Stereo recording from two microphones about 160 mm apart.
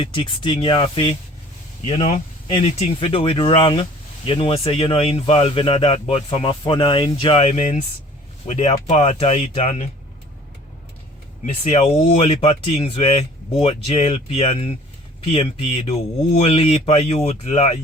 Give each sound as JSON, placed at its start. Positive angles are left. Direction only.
{"t": 0.0, "sound": "speech", "side_deg": 30}
{"t": 11.4, "sound": "speech", "side_deg": 45}